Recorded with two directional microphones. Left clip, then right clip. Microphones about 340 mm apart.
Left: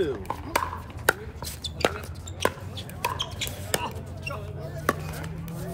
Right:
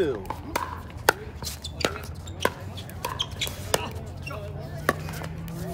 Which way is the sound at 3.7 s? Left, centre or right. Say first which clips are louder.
Right 1 dB; centre.